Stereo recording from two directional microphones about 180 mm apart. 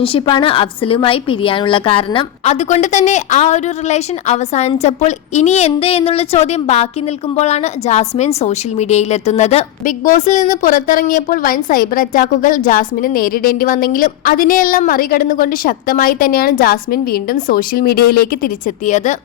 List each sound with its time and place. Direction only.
0.0 s a woman's voice: 30° left (ahead or behind); by 19.1 s 45° left (ahead or behind)